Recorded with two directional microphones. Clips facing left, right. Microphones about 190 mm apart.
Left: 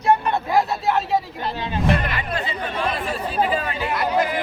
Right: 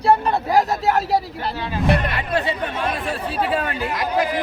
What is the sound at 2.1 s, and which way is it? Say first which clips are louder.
Speech: right 4 dB; 65° right (ahead or behind).